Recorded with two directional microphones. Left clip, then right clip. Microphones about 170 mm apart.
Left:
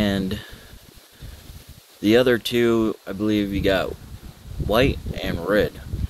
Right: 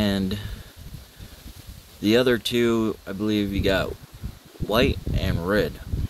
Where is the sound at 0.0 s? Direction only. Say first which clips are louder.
Left 2 dB; 15° right (ahead or behind).